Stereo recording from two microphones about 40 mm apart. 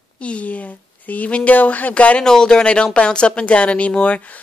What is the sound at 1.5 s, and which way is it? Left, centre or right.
Speech, left.